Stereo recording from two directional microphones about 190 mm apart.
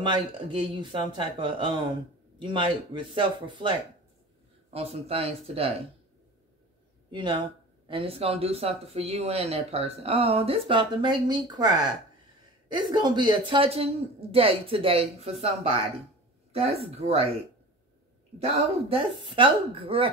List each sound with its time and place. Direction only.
0.0 s speech: 25° right (ahead or behind)
7.1 s speech: 25° right (ahead or behind)
18.4 s speech: 30° right (ahead or behind)